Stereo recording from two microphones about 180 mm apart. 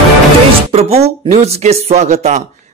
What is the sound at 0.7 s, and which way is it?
Speech, 35° right (ahead or behind).